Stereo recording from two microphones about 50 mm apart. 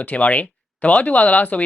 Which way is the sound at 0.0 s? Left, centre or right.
Left.